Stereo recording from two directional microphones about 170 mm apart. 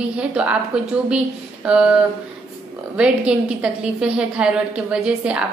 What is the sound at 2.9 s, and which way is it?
A woman's voice, 5° right (ahead or behind).